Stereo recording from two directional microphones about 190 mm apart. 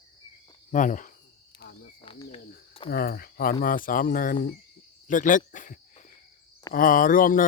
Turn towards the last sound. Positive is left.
turn(degrees=45)  # may be behind; listen again after turning